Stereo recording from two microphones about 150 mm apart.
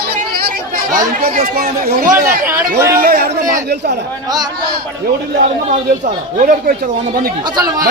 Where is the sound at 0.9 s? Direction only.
75° right (ahead or behind); by 3.9 s 90° right.